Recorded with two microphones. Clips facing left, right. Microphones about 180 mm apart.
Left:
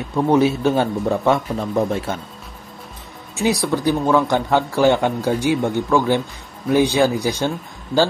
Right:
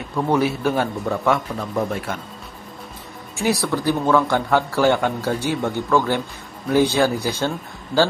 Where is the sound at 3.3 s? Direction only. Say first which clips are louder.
Left 2 dB; 20° left (ahead or behind).